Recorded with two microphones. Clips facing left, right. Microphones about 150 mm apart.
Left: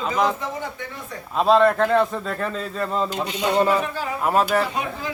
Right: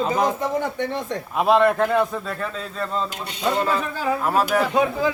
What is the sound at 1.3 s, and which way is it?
Speech, 10° right (ahead or behind).